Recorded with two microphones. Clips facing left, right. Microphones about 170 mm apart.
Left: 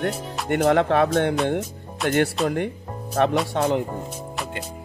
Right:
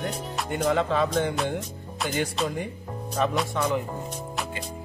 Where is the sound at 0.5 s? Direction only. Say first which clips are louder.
Left 6 dB; 70° left (ahead or behind).